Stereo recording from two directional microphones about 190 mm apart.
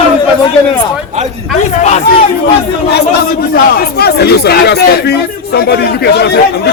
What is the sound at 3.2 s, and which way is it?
Speech, 55° left (ahead or behind).